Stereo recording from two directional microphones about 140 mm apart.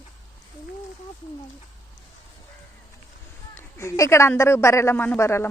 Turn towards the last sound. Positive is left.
turn(degrees=20)  # may be behind; listen again after turning